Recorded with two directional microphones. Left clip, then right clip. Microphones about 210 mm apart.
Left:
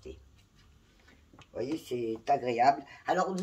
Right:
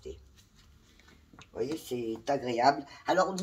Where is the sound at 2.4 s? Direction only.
20° left (ahead or behind).